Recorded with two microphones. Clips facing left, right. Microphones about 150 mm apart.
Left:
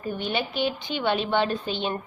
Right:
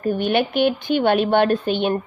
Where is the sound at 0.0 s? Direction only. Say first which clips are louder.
Right 9 dB; 55° right (ahead or behind).